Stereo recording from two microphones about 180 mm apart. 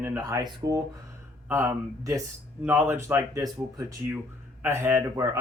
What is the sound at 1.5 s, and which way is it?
Speech, 15° right (ahead or behind).